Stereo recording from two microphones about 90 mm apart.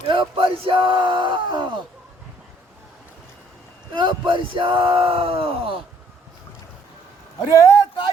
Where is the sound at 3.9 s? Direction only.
65° right (ahead or behind); by 5.7 s 90° right.